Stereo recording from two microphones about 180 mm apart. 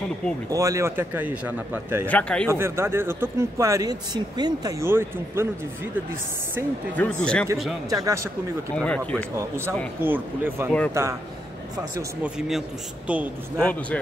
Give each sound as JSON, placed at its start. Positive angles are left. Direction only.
{"t": 0.5, "sound": "speech", "side_deg": -15}
{"t": 2.0, "sound": "speech", "side_deg": 5}
{"t": 2.5, "sound": "speech", "side_deg": -15}
{"t": 7.0, "sound": "speech", "side_deg": 5}
{"t": 7.9, "sound": "speech", "side_deg": -15}
{"t": 8.7, "sound": "speech", "side_deg": 5}
{"t": 10.0, "sound": "speech", "side_deg": -10}
{"t": 12.2, "sound": "speech", "side_deg": 0}
{"t": 13.6, "sound": "a man's voice", "side_deg": 5}